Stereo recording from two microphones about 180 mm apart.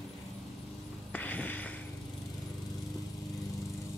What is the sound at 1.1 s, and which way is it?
Music, 10° left (ahead or behind).